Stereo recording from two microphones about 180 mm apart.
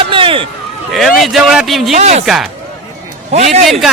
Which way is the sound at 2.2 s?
Centre (ahead or behind).